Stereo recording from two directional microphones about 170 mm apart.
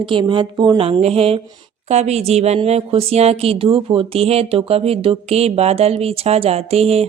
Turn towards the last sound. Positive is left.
turn(degrees=-35)  # may be behind; listen again after turning